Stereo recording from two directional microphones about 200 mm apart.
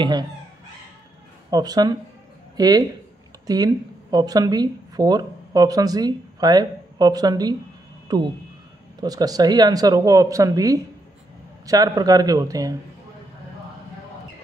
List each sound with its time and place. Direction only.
0.0 s speech: 20° right (ahead or behind)
1.5 s speech: 20° right (ahead or behind)